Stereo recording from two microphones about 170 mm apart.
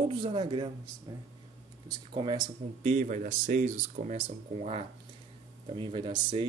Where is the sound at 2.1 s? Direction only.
30° right (ahead or behind).